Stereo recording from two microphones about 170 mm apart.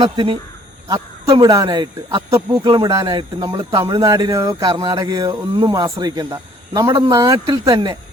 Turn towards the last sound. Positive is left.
turn(degrees=-25)  # may be behind; listen again after turning